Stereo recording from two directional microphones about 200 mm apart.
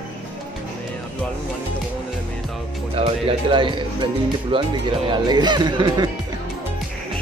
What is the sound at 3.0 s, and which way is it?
Speech, 25° right (ahead or behind).